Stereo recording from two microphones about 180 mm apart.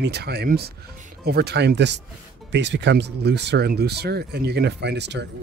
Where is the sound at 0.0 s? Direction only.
65° right (ahead or behind).